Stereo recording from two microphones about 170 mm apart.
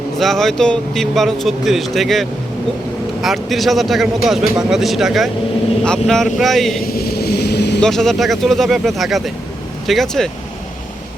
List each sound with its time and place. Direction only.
0.2 s a man's voice: centre (ahead or behind)
6.8 s boat: 60° left (ahead or behind); by 7.8 s 80° left
7.8 s a man's voice: centre (ahead or behind)